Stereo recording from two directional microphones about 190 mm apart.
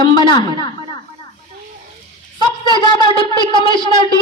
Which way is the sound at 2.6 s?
25° left (ahead or behind).